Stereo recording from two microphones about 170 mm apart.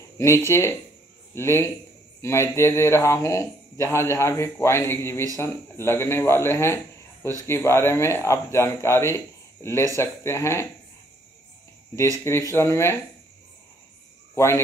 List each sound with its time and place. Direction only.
0.5 s speech: 15° left (ahead or behind)
12.3 s speech: 15° left (ahead or behind)
14.3 s speech: 15° left (ahead or behind)